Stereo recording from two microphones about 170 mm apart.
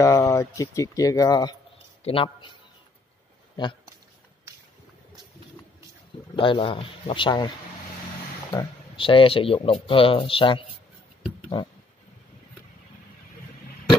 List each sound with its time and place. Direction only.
0.0 s speech: 20° left (ahead or behind)
6.3 s speech: 30° left (ahead or behind)
8.5 s speech: 30° left (ahead or behind)